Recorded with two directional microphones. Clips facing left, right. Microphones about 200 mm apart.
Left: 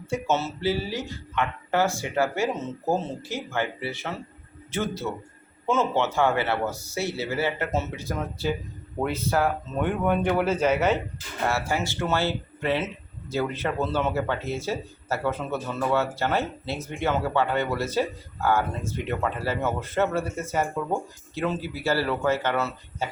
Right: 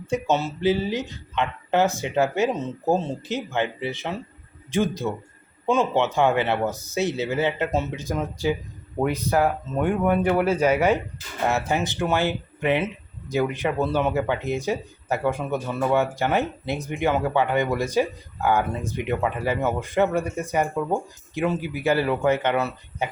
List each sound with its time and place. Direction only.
0.1 s speech: 15° right (ahead or behind)